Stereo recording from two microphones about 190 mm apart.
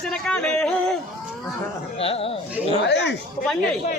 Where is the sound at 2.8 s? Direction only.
65° left (ahead or behind).